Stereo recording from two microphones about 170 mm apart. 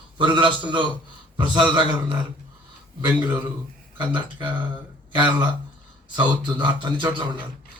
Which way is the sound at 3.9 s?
30° right (ahead or behind).